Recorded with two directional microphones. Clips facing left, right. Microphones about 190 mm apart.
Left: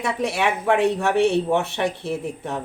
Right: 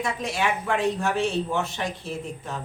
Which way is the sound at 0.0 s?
70° left (ahead or behind).